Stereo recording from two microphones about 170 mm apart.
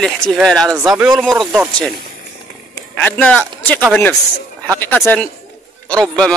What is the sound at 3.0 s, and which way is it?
A man's voice, 10° left (ahead or behind).